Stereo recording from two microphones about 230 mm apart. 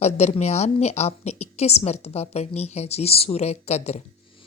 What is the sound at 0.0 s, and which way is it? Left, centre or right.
Speech, left.